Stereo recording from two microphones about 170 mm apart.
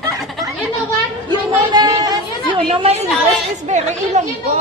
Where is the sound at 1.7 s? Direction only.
25° right (ahead or behind).